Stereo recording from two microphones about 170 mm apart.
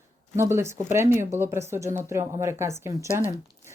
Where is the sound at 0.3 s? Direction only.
15° right (ahead or behind).